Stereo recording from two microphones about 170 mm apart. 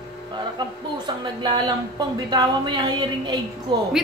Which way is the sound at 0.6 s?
25° right (ahead or behind).